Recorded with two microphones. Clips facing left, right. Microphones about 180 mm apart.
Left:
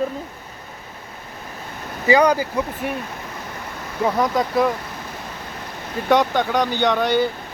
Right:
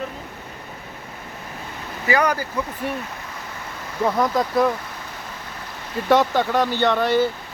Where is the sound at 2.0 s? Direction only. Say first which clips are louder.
Left 5 dB; 20° left (ahead or behind).